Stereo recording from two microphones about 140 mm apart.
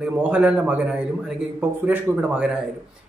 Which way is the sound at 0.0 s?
10° right (ahead or behind).